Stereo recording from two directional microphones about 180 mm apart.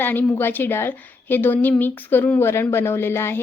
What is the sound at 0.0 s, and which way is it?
A woman's voice, 10° left (ahead or behind).